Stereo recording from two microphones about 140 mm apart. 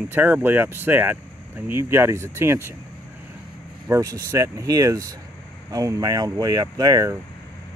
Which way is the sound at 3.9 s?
25° right (ahead or behind).